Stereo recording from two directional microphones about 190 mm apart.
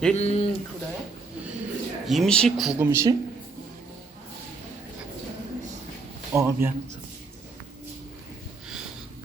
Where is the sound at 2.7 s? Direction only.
15° right (ahead or behind).